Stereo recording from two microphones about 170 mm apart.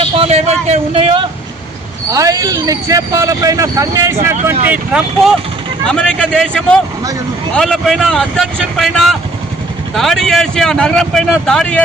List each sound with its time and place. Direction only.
0.0 s a man's voice: 35° right (ahead or behind)
2.1 s speech: 20° right (ahead or behind)
5.8 s speech: 5° left (ahead or behind)